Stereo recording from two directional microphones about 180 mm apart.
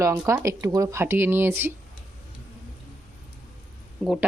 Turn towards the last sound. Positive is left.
turn(degrees=0)  # may be behind; listen again after turning